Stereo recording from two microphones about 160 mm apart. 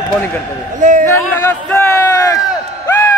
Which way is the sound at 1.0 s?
15° left (ahead or behind).